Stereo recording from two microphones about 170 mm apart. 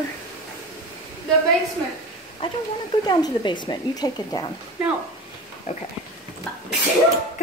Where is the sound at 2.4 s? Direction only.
30° left (ahead or behind).